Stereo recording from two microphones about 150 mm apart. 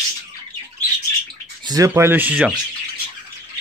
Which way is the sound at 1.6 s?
25° right (ahead or behind).